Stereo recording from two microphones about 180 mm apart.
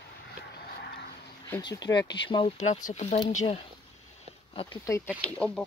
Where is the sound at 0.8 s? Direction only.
70° left (ahead or behind).